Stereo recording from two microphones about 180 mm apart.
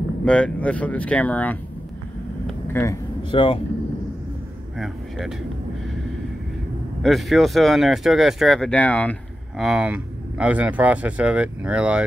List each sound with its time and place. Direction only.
0.2 s speech: 5° left (ahead or behind)
2.7 s speech: 15° left (ahead or behind)
3.3 s speech: 25° left (ahead or behind)
4.7 s speech: centre (ahead or behind)
7.0 s speech: centre (ahead or behind)